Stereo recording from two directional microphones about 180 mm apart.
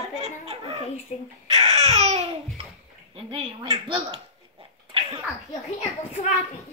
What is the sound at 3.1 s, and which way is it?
Speech, 30° right (ahead or behind).